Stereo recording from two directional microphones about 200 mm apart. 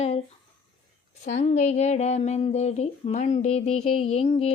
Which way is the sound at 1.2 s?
35° left (ahead or behind).